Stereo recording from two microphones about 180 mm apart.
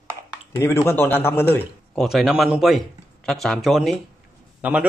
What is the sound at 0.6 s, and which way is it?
Speech, 15° left (ahead or behind).